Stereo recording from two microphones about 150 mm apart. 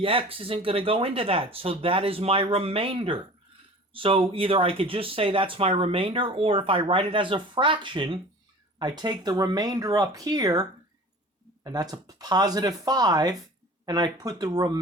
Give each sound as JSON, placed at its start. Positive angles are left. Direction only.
{"t": 0.0, "sound": "speech", "side_deg": -35}